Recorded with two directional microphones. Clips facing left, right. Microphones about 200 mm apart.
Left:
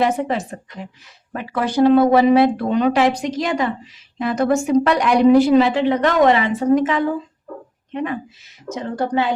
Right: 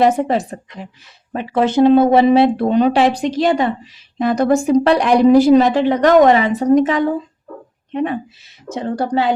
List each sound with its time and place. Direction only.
0.0 s a woman's voice: 35° right (ahead or behind)
1.3 s a woman's voice: 25° right (ahead or behind)
8.7 s a woman's voice: 35° right (ahead or behind)